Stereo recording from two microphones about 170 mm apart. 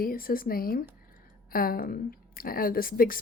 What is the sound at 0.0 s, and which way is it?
A woman's voice, 60° left (ahead or behind).